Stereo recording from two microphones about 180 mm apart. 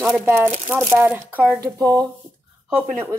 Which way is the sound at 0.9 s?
10° right (ahead or behind).